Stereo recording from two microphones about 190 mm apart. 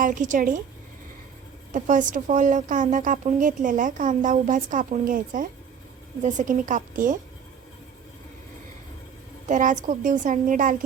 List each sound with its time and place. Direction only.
0.0 s a woman's voice: 45° right (ahead or behind)
1.7 s a woman's voice: 40° right (ahead or behind)
9.5 s a woman's voice: 40° right (ahead or behind)